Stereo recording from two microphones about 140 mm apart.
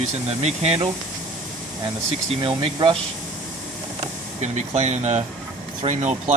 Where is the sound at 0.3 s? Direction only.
50° right (ahead or behind).